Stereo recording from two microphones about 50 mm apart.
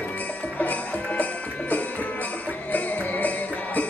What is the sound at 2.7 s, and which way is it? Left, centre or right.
Music, left.